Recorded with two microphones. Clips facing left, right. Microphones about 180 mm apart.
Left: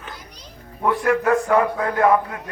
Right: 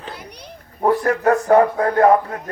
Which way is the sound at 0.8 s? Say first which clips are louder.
Right 2 dB; 40° right (ahead or behind).